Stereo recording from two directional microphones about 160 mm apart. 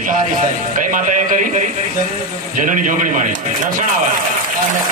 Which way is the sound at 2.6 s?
55° right (ahead or behind).